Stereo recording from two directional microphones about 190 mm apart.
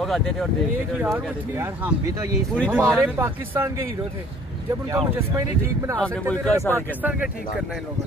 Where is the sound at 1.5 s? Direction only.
15° right (ahead or behind).